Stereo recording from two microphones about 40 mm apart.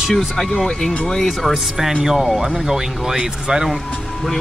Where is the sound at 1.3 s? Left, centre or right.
Centre.